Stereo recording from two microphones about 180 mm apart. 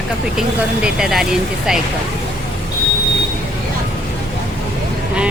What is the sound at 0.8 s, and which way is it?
Speech, 5° right (ahead or behind).